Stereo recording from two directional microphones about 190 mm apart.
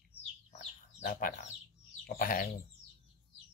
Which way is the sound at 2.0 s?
50° left (ahead or behind).